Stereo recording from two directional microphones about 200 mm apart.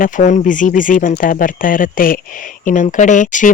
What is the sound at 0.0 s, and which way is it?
Speech, 35° left (ahead or behind).